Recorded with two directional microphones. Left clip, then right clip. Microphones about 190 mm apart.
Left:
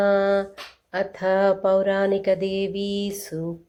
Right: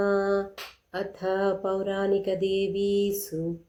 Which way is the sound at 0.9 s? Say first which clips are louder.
Left 7 dB; 25° left (ahead or behind).